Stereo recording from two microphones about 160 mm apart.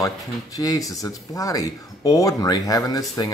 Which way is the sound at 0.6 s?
20° left (ahead or behind).